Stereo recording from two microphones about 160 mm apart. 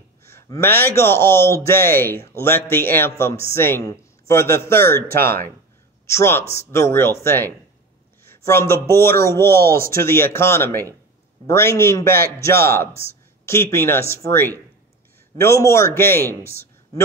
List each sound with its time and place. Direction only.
0.2 s a man's voice: 15° left (ahead or behind)
5.0 s speech: 70° right (ahead or behind)
6.0 s a man's voice: 15° left (ahead or behind)
8.2 s a sound: 15° left (ahead or behind)
8.8 s a man's voice: 15° left (ahead or behind)
9.7 s speech: 65° right (ahead or behind)
10.0 s a man's voice: 15° left (ahead or behind)
16.4 s a sound: 15° left (ahead or behind)